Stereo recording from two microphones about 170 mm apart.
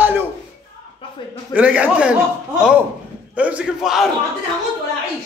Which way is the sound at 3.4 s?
5° right (ahead or behind).